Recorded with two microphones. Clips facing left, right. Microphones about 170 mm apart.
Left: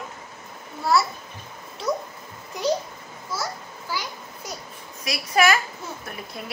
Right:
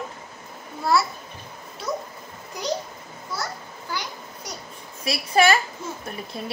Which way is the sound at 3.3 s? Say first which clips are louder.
Left 1 dB; 5° left (ahead or behind).